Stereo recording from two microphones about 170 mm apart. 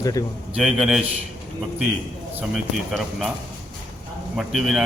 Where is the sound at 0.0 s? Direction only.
20° left (ahead or behind).